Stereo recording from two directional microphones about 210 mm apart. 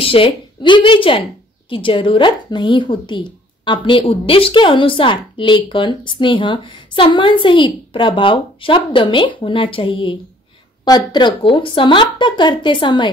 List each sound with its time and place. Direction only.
0.0 s a woman's voice: 25° left (ahead or behind)